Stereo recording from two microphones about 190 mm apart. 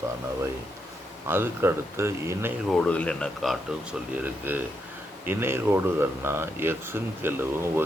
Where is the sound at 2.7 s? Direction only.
5° left (ahead or behind).